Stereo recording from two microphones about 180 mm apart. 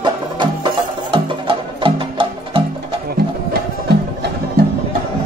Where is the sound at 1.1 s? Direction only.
30° right (ahead or behind).